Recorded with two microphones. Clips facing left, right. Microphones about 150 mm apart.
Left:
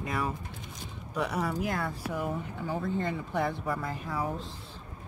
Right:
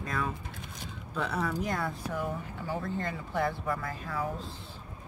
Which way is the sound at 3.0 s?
20° left (ahead or behind).